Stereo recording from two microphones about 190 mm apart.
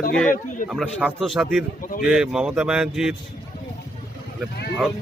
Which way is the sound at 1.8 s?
45° left (ahead or behind).